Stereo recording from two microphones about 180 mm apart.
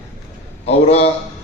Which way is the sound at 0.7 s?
35° left (ahead or behind).